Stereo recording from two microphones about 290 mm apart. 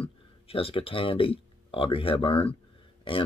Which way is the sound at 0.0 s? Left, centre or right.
Centre.